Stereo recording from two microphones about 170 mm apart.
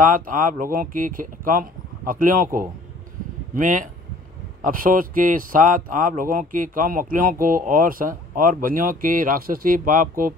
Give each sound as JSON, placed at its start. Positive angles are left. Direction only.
{"t": 0.0, "sound": "speech", "side_deg": -50}